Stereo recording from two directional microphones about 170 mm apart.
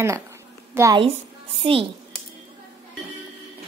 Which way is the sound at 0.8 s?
15° right (ahead or behind).